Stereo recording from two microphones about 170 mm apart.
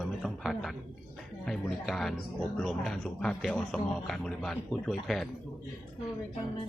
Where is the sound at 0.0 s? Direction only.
Centre (ahead or behind).